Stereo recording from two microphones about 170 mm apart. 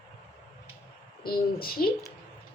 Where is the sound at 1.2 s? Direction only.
60° left (ahead or behind).